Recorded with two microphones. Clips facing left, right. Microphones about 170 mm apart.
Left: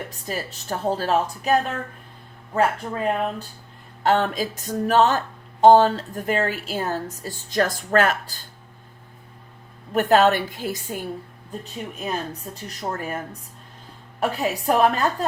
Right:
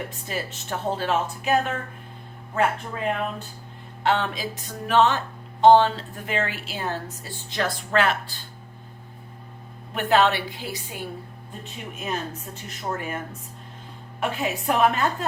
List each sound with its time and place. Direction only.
0.3 s speech: 35° left (ahead or behind)
2.6 s speech: 35° left (ahead or behind)
9.9 s speech: 40° left (ahead or behind)